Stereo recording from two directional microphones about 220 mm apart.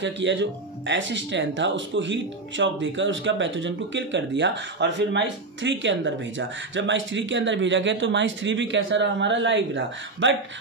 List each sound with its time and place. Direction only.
0.0 s speech: 55° right (ahead or behind)